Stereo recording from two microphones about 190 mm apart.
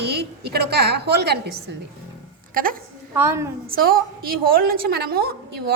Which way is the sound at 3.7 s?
50° right (ahead or behind).